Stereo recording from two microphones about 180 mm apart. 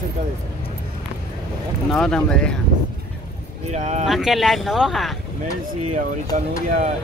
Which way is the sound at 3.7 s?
40° right (ahead or behind).